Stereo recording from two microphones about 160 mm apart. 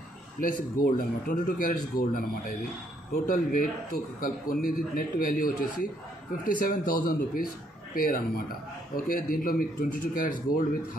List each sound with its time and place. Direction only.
0.4 s a man's voice: 60° left (ahead or behind)